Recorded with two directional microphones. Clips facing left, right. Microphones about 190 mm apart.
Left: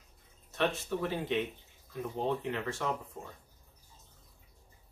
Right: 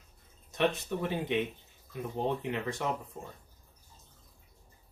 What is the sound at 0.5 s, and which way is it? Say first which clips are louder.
Speech: right 2 dB; 20° right (ahead or behind).